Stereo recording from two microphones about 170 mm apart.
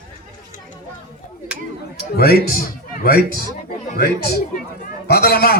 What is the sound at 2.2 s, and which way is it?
Speech, 60° left (ahead or behind).